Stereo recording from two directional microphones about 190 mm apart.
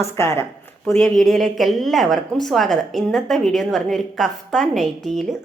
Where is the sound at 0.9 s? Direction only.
Centre (ahead or behind).